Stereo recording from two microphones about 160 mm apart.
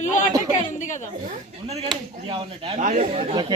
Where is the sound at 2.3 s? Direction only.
35° right (ahead or behind).